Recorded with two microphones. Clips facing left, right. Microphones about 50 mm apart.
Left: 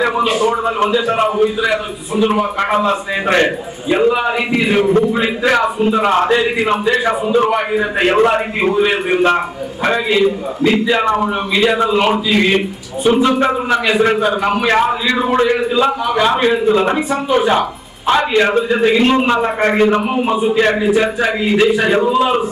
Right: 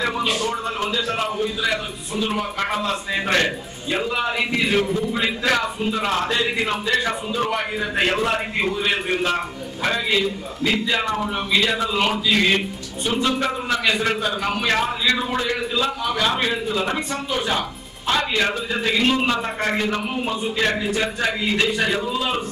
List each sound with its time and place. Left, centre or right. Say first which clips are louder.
0.2 s a man's voice: left 8 dB; centre
11.5 s a man's voice: left 7 dB; centre
13.3 s a man's voice: left 8 dB; left
21.8 s a man's voice: left 10 dB; left